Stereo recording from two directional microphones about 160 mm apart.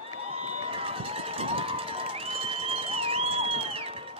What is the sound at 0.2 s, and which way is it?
Run, 35° right (ahead or behind).